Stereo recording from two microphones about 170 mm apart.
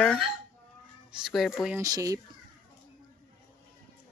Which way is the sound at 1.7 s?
20° right (ahead or behind).